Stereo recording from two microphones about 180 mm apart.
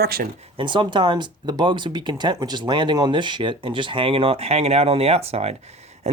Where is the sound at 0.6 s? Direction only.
25° right (ahead or behind).